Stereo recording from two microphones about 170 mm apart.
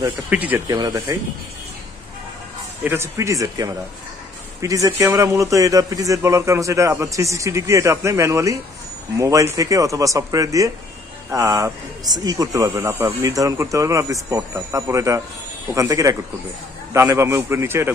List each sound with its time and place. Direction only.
0.3 s a man's voice: 10° right (ahead or behind)
0.7 s speech: 25° right (ahead or behind)
2.8 s a man's voice: 15° right (ahead or behind)